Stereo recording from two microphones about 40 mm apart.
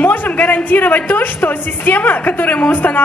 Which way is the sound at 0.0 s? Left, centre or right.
Left.